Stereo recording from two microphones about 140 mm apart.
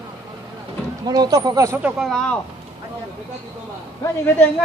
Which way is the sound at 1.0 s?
30° right (ahead or behind).